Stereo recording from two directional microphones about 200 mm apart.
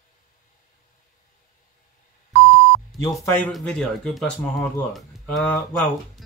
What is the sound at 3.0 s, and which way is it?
Speech, 15° left (ahead or behind).